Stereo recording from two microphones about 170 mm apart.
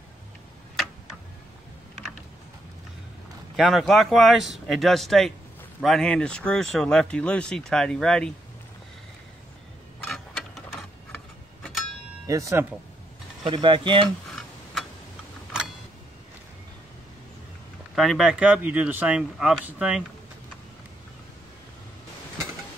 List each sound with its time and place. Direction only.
3.5 s speech: centre (ahead or behind)
10.0 s tick-tock: centre (ahead or behind)
12.3 s speech: 20° right (ahead or behind)
13.4 s speech: 30° right (ahead or behind)
14.3 s tick-tock: centre (ahead or behind)
17.9 s speech: centre (ahead or behind)